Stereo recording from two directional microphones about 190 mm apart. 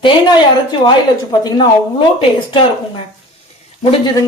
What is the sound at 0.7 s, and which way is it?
A woman's voice, 25° left (ahead or behind).